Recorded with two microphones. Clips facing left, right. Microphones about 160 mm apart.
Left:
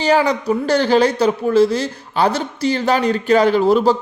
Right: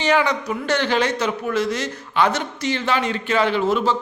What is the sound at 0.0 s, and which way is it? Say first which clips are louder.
A man's voice: left 4 dB; 35° left (ahead or behind).